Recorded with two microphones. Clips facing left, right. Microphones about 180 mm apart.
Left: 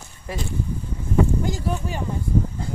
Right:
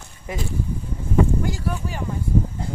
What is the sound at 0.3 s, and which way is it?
Speech, 20° right (ahead or behind).